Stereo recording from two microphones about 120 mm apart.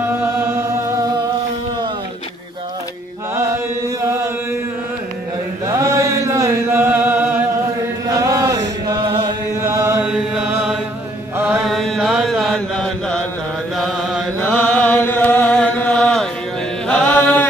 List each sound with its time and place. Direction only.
0.2 s music: 20° right (ahead or behind)
3.3 s chant: 25° right (ahead or behind)
5.7 s chant: 25° right (ahead or behind)
8.1 s chant: 25° right (ahead or behind)
10.0 s chant: 10° right (ahead or behind)
11.3 s mantra: 15° right (ahead or behind)
11.6 s chant: centre (ahead or behind)
14.4 s chant: 15° left (ahead or behind)